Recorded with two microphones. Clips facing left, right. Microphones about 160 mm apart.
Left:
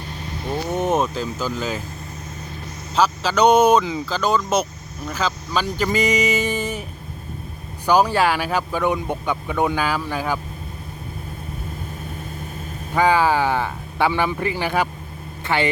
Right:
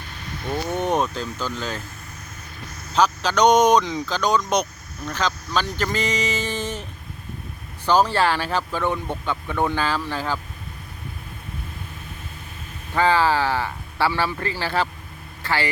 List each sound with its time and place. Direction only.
0.7 s speech: 5° left (ahead or behind)
2.9 s speech: 5° left (ahead or behind)
7.9 s speech: 10° left (ahead or behind)
12.9 s a woman's voice: 15° left (ahead or behind)